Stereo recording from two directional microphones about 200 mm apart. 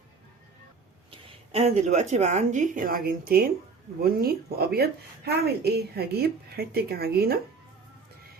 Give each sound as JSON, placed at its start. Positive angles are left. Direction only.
{"t": 1.5, "sound": "a woman's voice", "side_deg": -35}